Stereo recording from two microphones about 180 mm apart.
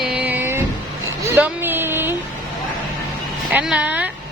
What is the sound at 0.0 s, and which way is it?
Vehicle, 5° right (ahead or behind).